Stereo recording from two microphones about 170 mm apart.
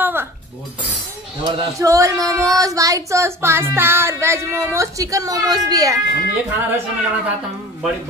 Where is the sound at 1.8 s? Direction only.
20° right (ahead or behind).